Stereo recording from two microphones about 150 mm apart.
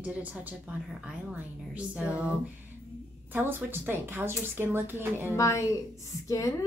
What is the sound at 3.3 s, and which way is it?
A woman's voice, 15° right (ahead or behind).